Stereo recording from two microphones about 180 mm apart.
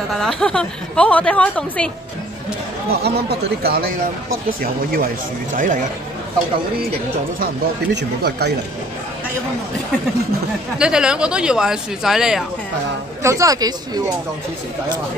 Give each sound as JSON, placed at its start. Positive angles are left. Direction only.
{"t": 0.1, "sound": "a woman's voice", "side_deg": 5}
{"t": 2.9, "sound": "speech", "side_deg": -65}
{"t": 7.9, "sound": "speech", "side_deg": -70}
{"t": 10.8, "sound": "a woman's voice", "side_deg": -5}
{"t": 13.2, "sound": "speech", "side_deg": -15}